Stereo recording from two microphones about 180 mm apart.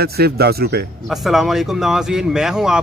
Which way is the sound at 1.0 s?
Centre (ahead or behind).